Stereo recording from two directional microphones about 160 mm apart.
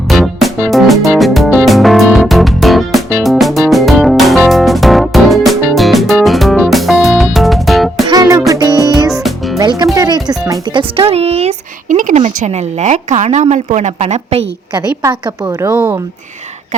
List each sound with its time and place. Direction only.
0.1 s music: centre (ahead or behind)
8.0 s music: 25° right (ahead or behind)
10.9 s speech: 40° right (ahead or behind)
15.0 s a woman's voice: 20° right (ahead or behind)